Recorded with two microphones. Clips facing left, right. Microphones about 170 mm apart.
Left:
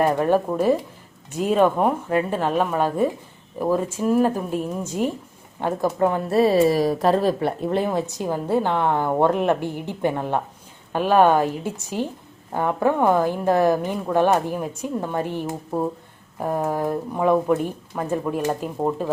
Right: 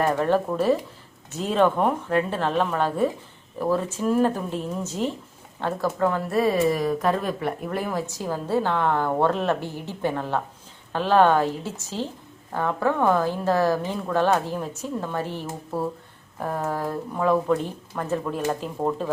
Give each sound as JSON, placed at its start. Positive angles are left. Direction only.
{"t": 0.0, "sound": "a woman's voice", "side_deg": 15}